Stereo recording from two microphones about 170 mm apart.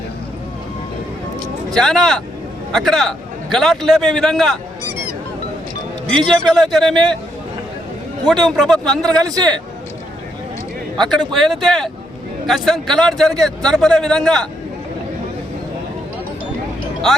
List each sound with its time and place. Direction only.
1.7 s a man's voice: 5° left (ahead or behind)
6.1 s a man's voice: 5° left (ahead or behind)
8.3 s a man's voice: centre (ahead or behind)
9.1 s speech: 20° right (ahead or behind)
10.9 s a man's voice: centre (ahead or behind)